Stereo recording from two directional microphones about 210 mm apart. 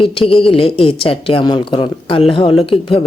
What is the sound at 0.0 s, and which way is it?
Speech, 25° left (ahead or behind).